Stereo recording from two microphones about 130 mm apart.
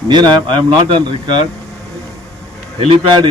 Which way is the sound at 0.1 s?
35° right (ahead or behind).